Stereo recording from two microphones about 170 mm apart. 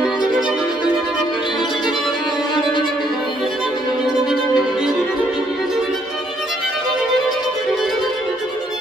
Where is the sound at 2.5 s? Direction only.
30° left (ahead or behind).